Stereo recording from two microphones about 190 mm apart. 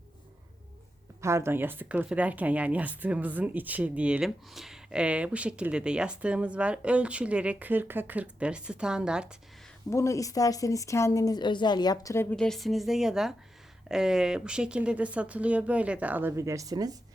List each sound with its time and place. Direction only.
1.2 s speech: 15° right (ahead or behind)
9.9 s speech: 15° left (ahead or behind); by 17.0 s 20° right (ahead or behind)